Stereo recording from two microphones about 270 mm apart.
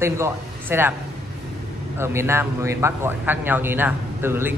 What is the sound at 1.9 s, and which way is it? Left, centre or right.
Speech, centre.